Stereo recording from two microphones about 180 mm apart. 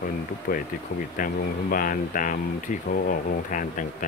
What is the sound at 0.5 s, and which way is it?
Speech, 50° left (ahead or behind).